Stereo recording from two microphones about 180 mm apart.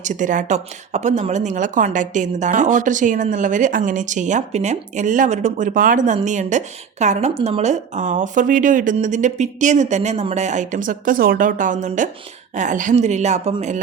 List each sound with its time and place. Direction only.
0.0 s speech: 45° right (ahead or behind)